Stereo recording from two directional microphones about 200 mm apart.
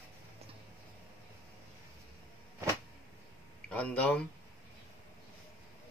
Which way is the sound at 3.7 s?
5° left (ahead or behind).